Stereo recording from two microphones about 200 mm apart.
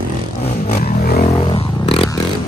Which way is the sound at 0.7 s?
50° left (ahead or behind).